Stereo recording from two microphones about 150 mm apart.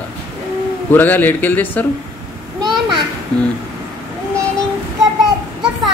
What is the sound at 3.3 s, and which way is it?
Music, 5° left (ahead or behind).